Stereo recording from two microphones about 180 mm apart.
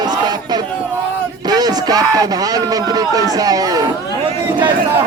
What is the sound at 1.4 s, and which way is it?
Speech, 20° right (ahead or behind).